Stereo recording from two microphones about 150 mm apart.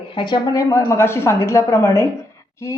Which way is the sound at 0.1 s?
30° left (ahead or behind).